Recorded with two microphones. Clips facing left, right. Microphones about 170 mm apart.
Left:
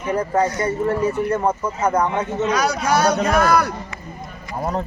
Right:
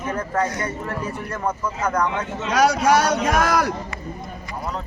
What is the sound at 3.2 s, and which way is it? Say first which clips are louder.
Speech: left 2 dB; 90° right.